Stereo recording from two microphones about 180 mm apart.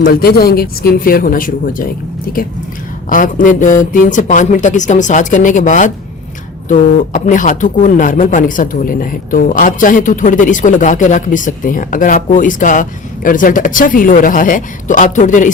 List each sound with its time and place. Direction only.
0.0 s speech: 55° left (ahead or behind)